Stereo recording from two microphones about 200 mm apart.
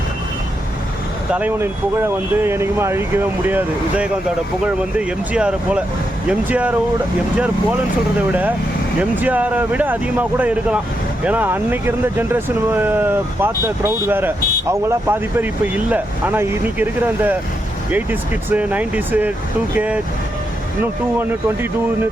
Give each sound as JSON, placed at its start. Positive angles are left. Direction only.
{"t": 1.3, "sound": "speech", "side_deg": -10}